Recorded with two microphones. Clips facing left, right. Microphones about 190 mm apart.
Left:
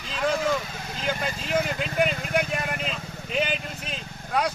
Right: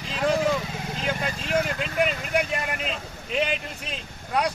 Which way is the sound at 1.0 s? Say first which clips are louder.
Left 1 dB; centre (ahead or behind).